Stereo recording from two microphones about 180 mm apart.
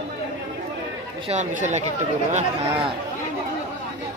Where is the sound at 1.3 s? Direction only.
40° right (ahead or behind).